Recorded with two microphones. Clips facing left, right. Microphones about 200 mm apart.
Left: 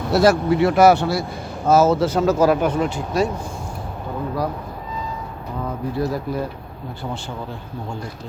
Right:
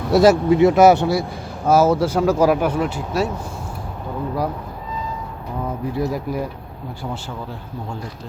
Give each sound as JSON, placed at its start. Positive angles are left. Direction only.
{"t": 0.1, "sound": "speech", "side_deg": -20}
{"t": 5.9, "sound": "speech", "side_deg": -15}